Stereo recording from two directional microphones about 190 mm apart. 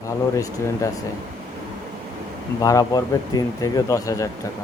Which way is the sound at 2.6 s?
20° left (ahead or behind).